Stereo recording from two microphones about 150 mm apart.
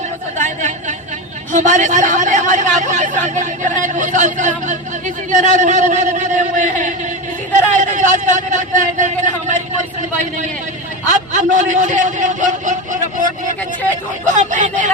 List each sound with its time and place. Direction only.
0.3 s chatter: 55° right (ahead or behind)
1.5 s a man's voice: 55° right (ahead or behind)
11.3 s speech: 55° right (ahead or behind)
14.3 s speech: 55° right (ahead or behind)